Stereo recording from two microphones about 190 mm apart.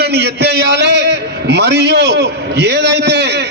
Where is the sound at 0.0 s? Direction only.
60° right (ahead or behind).